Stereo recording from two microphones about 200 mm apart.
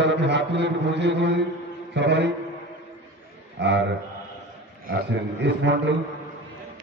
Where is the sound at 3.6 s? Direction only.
60° right (ahead or behind).